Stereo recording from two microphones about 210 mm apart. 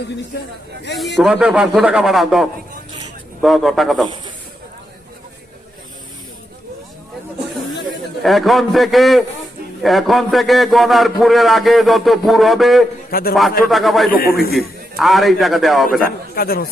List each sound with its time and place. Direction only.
0.3 s speech: 50° left (ahead or behind)
0.9 s a man's voice: centre (ahead or behind)
8.2 s a man's voice: centre (ahead or behind)
13.1 s a man's voice: 45° left (ahead or behind)
13.7 s a man's voice: centre (ahead or behind)
14.1 s speech: 45° left (ahead or behind)
14.5 s a man's voice: centre (ahead or behind)
16.0 s speech: 45° left (ahead or behind)